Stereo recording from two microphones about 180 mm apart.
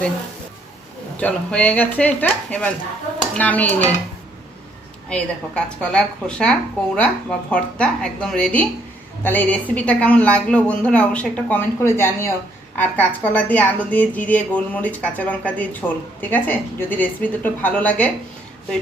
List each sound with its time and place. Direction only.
1.1 s a woman's voice: 10° left (ahead or behind)
5.0 s a woman's voice: 5° left (ahead or behind)